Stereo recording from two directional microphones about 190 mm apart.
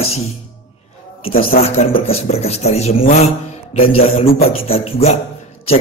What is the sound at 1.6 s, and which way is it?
Speech, 30° left (ahead or behind).